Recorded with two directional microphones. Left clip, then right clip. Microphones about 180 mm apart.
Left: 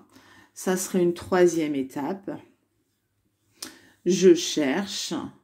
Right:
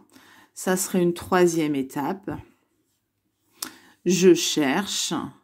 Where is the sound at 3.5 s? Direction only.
30° right (ahead or behind).